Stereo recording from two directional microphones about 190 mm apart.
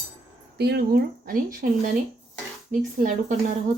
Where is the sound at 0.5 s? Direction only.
60° right (ahead or behind).